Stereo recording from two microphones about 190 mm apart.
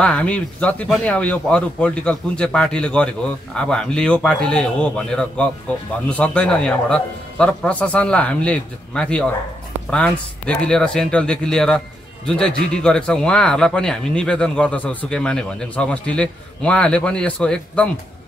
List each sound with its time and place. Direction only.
0.0 s speech: 5° left (ahead or behind)